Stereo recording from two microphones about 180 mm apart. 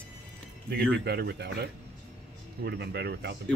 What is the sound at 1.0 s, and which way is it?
Speech, 65° right (ahead or behind).